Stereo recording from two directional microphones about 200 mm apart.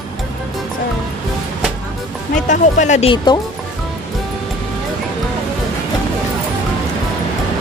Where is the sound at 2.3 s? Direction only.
40° left (ahead or behind).